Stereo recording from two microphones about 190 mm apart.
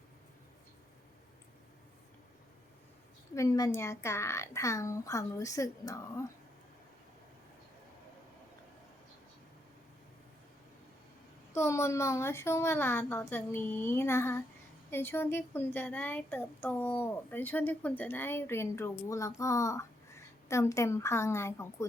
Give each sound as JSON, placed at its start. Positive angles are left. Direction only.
{"t": 3.3, "sound": "speech", "side_deg": 15}
{"t": 11.5, "sound": "speech", "side_deg": 15}